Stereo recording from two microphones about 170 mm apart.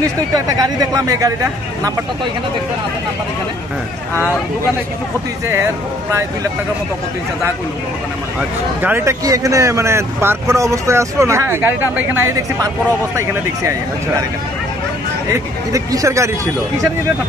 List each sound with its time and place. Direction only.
0.3 s speech: 20° right (ahead or behind)
8.4 s speech: 10° right (ahead or behind)
15.7 s speech: 20° right (ahead or behind)